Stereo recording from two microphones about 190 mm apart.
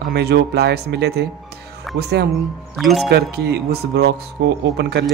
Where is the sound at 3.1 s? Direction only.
60° right (ahead or behind).